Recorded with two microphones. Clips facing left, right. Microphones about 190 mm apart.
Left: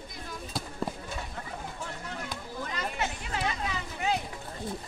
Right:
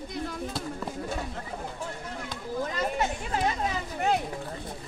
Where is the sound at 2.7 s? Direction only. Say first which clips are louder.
Right 2 dB; 45° right (ahead or behind).